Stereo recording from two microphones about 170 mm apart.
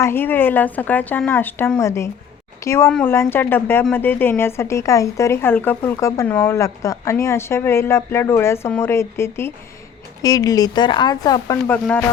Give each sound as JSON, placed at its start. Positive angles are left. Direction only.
{"t": 0.0, "sound": "speech", "side_deg": 15}
{"t": 11.7, "sound": "speech", "side_deg": 10}